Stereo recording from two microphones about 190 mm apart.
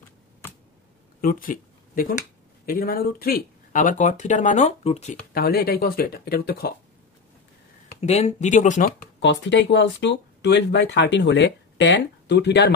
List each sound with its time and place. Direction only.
1.2 s speech: 45° left (ahead or behind)
5.3 s speech: 50° left (ahead or behind)
8.0 s speech: 35° left (ahead or behind)
9.2 s speech: 70° left (ahead or behind)